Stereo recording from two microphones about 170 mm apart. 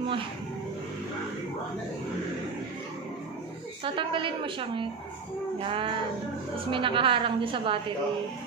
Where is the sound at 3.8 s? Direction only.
30° right (ahead or behind).